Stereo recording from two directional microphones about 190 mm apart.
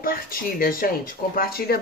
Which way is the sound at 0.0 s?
50° left (ahead or behind).